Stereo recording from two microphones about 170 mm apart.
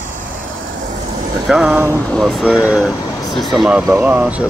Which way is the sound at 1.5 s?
5° right (ahead or behind).